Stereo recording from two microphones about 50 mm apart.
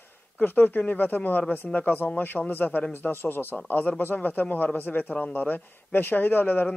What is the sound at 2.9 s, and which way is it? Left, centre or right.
Speech, left.